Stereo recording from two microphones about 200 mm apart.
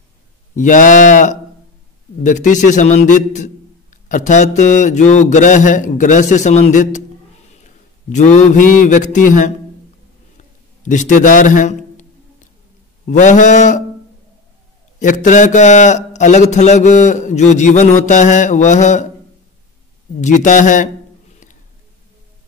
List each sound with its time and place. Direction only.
0.6 s a man's voice: 40° left (ahead or behind)
10.8 s a sound: 40° left (ahead or behind)
15.0 s a man's voice: 40° left (ahead or behind)
20.2 s a man's voice: 35° left (ahead or behind)